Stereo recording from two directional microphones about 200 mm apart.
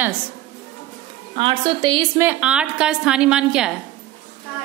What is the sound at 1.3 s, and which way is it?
Speech, 25° right (ahead or behind).